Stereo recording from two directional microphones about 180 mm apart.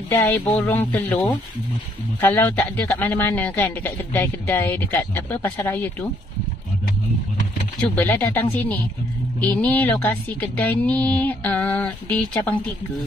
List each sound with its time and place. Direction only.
0.1 s speech: 10° left (ahead or behind)
7.9 s speech: 10° left (ahead or behind)